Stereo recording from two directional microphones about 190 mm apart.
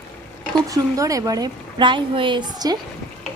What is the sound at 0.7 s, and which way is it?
A woman's voice, 15° right (ahead or behind).